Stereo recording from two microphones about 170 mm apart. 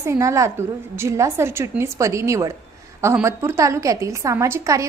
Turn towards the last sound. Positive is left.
turn(degrees=-15)  # may be behind; listen again after turning